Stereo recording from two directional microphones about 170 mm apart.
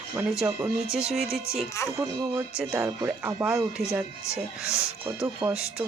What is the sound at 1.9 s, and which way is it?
Speech, 20° right (ahead or behind).